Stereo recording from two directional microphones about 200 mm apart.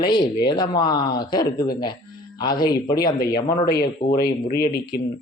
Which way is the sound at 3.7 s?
50° left (ahead or behind).